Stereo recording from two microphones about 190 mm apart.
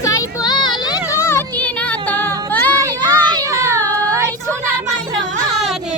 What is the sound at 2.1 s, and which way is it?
Music, 10° left (ahead or behind).